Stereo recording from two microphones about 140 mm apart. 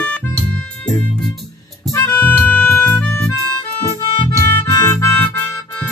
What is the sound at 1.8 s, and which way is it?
Harmonica, 15° left (ahead or behind).